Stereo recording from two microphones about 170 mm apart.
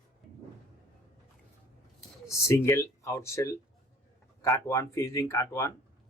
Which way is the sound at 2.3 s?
15° left (ahead or behind).